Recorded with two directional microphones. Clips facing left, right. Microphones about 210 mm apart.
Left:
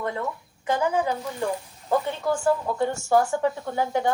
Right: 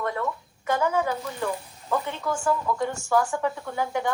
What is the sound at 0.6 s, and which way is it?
Speech, 15° left (ahead or behind).